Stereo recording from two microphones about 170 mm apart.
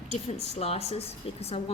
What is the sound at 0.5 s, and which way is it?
A woman's voice, 35° left (ahead or behind).